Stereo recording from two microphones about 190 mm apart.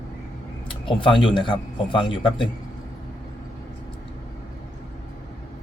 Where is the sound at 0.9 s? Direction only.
25° left (ahead or behind).